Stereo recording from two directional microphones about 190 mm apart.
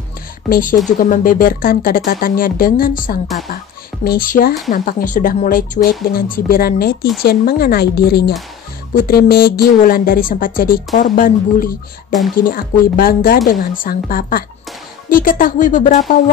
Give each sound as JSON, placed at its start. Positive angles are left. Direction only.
{"t": 0.5, "sound": "a woman's voice", "side_deg": 45}